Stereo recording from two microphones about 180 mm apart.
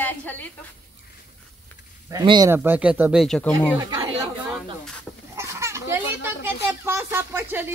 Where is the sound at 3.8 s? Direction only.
20° right (ahead or behind).